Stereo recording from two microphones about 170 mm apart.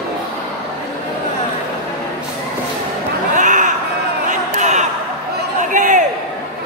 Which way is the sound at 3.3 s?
45° right (ahead or behind).